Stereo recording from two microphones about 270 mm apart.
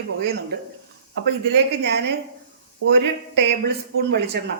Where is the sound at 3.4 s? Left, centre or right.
Right.